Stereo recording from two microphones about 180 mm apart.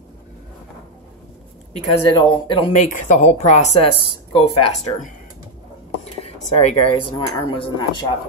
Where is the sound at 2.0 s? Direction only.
25° left (ahead or behind).